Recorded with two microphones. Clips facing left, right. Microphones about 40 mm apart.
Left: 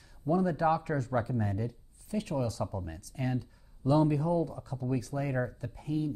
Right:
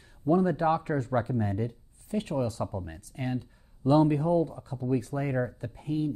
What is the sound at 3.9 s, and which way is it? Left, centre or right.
Speech, right.